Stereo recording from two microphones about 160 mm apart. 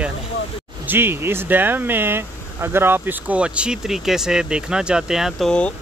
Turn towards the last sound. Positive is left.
turn(degrees=5)  # may be behind; listen again after turning